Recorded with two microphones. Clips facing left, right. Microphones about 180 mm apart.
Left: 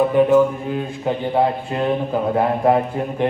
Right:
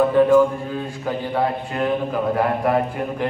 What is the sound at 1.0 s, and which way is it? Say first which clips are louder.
A man's voice: left 4 dB; 25° left (ahead or behind).